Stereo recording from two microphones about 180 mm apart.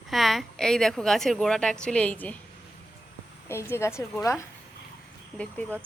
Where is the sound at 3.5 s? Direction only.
15° left (ahead or behind).